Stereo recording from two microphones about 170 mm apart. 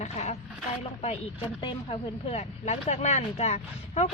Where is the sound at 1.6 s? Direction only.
35° left (ahead or behind).